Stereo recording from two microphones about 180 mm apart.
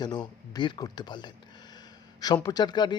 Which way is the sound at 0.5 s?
25° left (ahead or behind).